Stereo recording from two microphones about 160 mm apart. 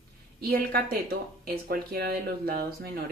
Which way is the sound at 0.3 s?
70° right (ahead or behind).